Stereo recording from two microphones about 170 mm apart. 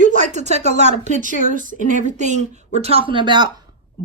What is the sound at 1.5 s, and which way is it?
Speech, 50° right (ahead or behind).